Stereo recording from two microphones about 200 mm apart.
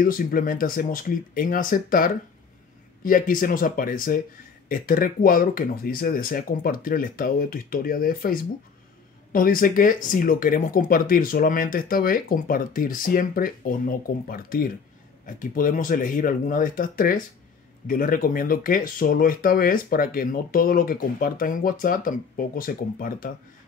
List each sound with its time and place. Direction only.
0.0 s speech: 45° left (ahead or behind)